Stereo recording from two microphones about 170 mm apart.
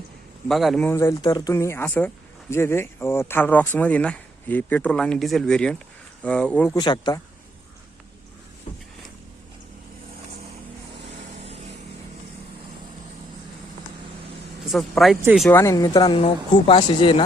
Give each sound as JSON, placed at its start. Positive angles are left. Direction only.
{"t": 0.4, "sound": "speech", "side_deg": 0}
{"t": 0.9, "sound": "speech", "side_deg": 15}
{"t": 6.7, "sound": "speech", "side_deg": 25}
{"t": 14.6, "sound": "speech", "side_deg": 0}
{"t": 15.4, "sound": "speech", "side_deg": 15}